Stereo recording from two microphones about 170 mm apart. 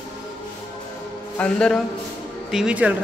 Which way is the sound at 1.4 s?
5° left (ahead or behind).